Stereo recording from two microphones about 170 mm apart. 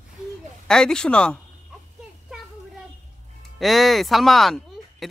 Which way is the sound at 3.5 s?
Centre (ahead or behind).